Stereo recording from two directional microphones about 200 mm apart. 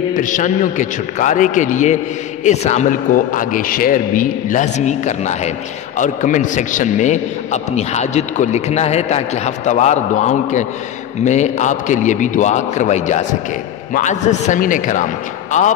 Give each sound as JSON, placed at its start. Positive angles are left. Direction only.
{"t": 0.1, "sound": "a man's voice", "side_deg": 40}